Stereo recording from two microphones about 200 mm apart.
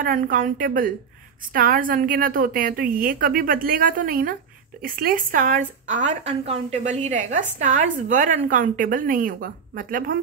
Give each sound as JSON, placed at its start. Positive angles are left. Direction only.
{"t": 0.0, "sound": "a woman's voice", "side_deg": -45}